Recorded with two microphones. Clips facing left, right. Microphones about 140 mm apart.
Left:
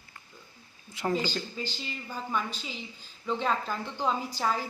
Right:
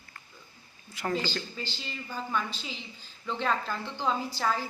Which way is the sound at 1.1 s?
10° left (ahead or behind).